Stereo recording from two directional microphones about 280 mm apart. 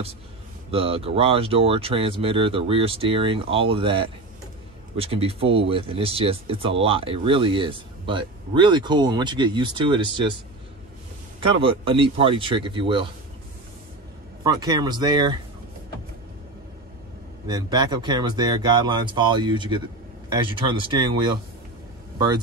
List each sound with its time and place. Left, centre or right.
0.7 s speech: right
11.4 s speech: centre
14.4 s speech: centre
17.5 s speech: centre